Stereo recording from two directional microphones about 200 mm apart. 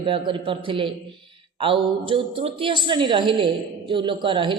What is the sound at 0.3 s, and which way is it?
A woman's voice, 25° right (ahead or behind).